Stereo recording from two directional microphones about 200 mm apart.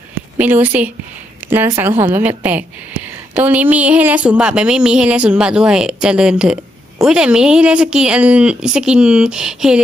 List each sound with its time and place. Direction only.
0.3 s a woman's voice: 10° right (ahead or behind)